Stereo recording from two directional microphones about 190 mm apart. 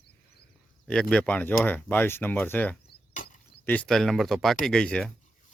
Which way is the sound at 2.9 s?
50° left (ahead or behind).